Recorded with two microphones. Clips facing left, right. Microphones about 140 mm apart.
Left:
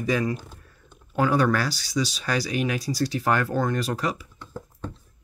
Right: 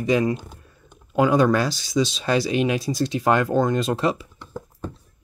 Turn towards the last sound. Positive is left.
turn(degrees=-25)  # may be behind; listen again after turning